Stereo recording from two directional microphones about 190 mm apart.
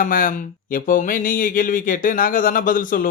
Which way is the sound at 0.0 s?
45° left (ahead or behind).